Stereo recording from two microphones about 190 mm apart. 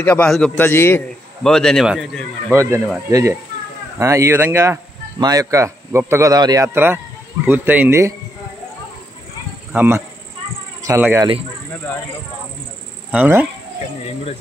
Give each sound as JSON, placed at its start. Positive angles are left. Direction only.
{"t": 0.0, "sound": "a man's voice", "side_deg": 5}
{"t": 2.5, "sound": "a man's voice", "side_deg": -15}
{"t": 9.7, "sound": "speech", "side_deg": -10}
{"t": 13.1, "sound": "a man's voice", "side_deg": -10}